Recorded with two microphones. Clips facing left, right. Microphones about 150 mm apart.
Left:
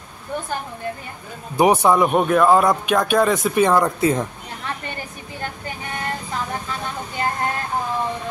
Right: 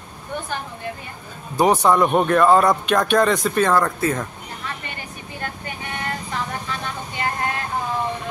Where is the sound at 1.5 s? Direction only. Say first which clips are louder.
Left 1 dB; 15° left (ahead or behind).